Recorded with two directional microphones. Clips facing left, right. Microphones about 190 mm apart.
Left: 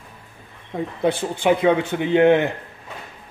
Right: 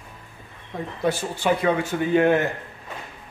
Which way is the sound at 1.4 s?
20° left (ahead or behind).